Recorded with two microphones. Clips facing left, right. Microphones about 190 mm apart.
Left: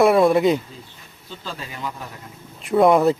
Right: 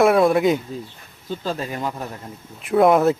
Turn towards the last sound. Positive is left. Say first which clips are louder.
# even
turn(degrees=0)  # may be behind; listen again after turning